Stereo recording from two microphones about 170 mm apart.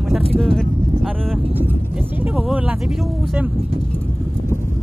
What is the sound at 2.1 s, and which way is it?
Speech, 10° right (ahead or behind).